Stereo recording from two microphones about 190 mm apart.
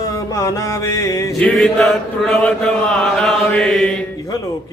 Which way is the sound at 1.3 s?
5° left (ahead or behind).